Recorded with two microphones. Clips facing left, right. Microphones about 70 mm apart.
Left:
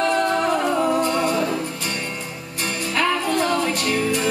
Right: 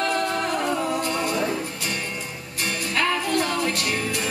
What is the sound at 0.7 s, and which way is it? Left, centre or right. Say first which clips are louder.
Music: left 6 dB; left.